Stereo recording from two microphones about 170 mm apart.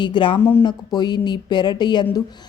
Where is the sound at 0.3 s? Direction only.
10° left (ahead or behind).